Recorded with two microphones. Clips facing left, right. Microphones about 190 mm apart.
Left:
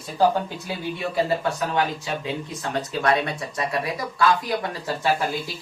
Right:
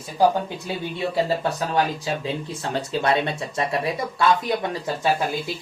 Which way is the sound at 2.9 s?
25° right (ahead or behind).